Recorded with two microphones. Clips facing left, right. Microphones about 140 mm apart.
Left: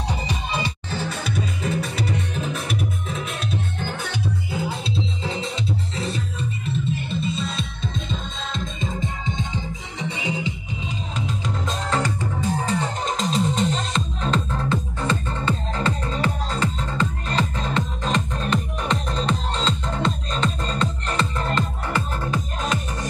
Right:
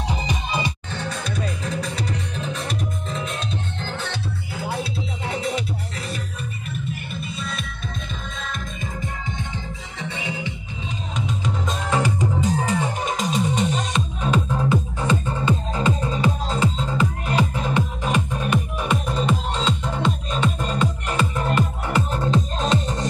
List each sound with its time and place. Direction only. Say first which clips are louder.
0.9 s music: left 4 dB; 5° left (ahead or behind)
5.9 s music: left 3 dB; 25° left (ahead or behind)
11.1 s music: right 2 dB; centre (ahead or behind)
11.9 s music: right 4 dB; 15° right (ahead or behind)